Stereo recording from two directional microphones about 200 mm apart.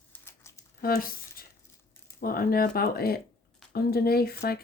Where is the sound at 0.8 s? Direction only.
50° left (ahead or behind).